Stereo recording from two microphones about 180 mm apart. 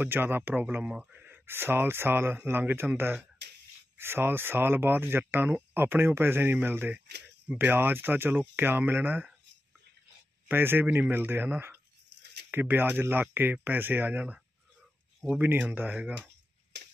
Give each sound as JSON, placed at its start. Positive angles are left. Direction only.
{"t": 0.0, "sound": "speech", "side_deg": -10}
{"t": 10.5, "sound": "speech", "side_deg": -10}
{"t": 16.7, "sound": "tick-tock", "side_deg": -70}